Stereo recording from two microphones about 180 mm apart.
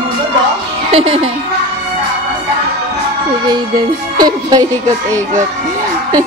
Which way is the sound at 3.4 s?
25° right (ahead or behind).